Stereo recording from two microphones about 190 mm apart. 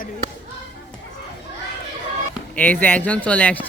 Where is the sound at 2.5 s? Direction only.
10° left (ahead or behind).